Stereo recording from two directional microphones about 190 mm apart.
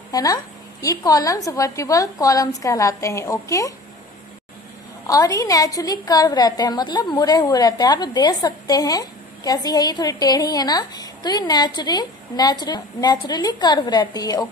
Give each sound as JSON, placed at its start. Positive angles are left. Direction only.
{"t": 0.1, "sound": "a woman's voice", "side_deg": 20}
{"t": 5.0, "sound": "a woman's voice", "side_deg": 20}